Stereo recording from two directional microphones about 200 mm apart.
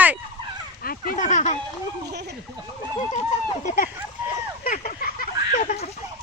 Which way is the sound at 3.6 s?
40° left (ahead or behind).